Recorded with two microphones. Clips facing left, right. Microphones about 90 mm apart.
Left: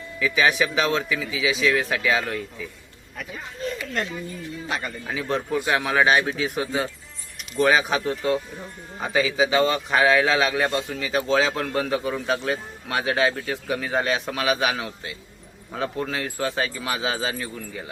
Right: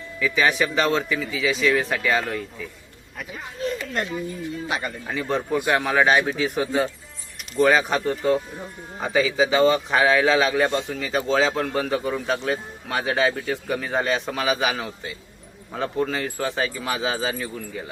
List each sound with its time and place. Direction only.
0.2 s speech: centre (ahead or behind)